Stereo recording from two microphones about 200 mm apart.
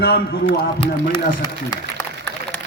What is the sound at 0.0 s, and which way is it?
Speech, 50° left (ahead or behind).